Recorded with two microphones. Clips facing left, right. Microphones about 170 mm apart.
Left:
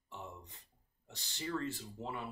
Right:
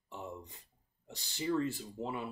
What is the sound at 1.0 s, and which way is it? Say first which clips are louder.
Speech: right 7 dB; 10° right (ahead or behind).